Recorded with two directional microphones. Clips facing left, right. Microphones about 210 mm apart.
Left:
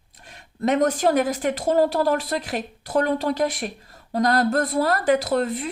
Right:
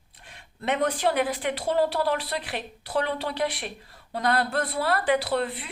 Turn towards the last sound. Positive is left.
turn(degrees=45)  # may be behind; listen again after turning